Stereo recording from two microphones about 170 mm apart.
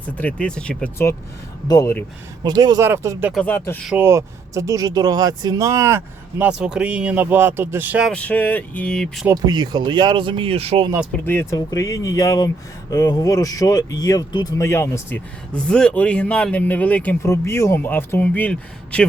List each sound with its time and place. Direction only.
0.2 s speech: 5° left (ahead or behind)
1.6 s speech: 20° left (ahead or behind)
2.4 s speech: 25° right (ahead or behind)
3.3 s speech: 10° left (ahead or behind)
3.8 s speech: 10° right (ahead or behind)
6.4 s speech: 5° right (ahead or behind)
8.1 s speech: 10° left (ahead or behind)
9.2 s speech: 20° right (ahead or behind)
11.1 s speech: 10° left (ahead or behind)